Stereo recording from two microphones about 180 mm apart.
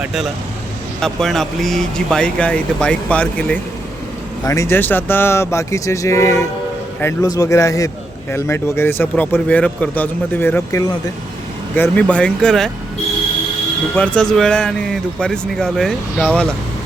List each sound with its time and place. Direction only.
0.0 s speech: centre (ahead or behind)
13.9 s speech: 5° left (ahead or behind)